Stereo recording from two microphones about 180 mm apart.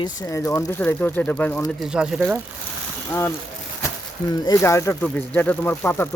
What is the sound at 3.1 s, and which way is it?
Speech, 15° left (ahead or behind).